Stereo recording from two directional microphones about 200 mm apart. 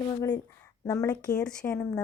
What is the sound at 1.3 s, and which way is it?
Speech, 5° left (ahead or behind).